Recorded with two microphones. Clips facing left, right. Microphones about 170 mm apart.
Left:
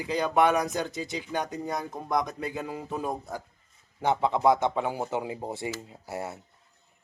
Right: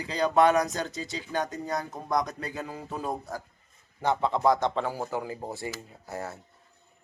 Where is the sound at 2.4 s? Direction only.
15° left (ahead or behind).